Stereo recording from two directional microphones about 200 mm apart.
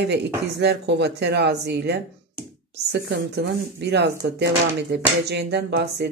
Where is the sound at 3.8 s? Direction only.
55° right (ahead or behind).